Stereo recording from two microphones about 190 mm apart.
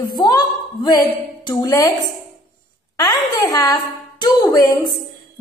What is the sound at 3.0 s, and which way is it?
A child's voice, 20° left (ahead or behind).